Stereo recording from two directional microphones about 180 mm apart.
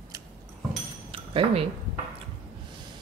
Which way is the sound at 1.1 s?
30° right (ahead or behind).